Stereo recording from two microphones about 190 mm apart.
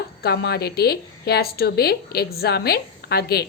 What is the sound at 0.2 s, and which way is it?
A woman's voice, 60° left (ahead or behind).